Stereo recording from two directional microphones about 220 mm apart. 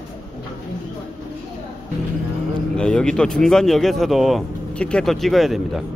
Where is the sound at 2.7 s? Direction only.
5° left (ahead or behind).